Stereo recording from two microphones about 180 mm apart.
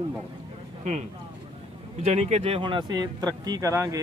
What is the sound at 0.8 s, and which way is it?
Speech, 40° right (ahead or behind).